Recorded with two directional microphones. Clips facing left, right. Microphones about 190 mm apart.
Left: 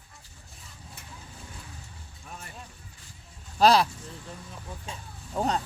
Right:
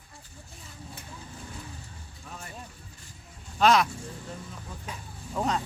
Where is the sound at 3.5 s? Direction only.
35° left (ahead or behind).